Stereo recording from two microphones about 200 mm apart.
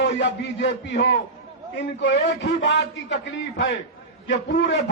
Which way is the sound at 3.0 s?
65° left (ahead or behind).